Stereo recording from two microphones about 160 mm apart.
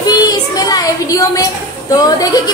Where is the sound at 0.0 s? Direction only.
25° left (ahead or behind).